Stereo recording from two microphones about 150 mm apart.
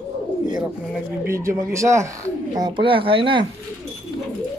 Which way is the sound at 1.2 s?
20° right (ahead or behind).